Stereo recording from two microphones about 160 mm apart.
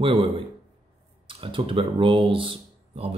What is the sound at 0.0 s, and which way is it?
Speech, 35° right (ahead or behind).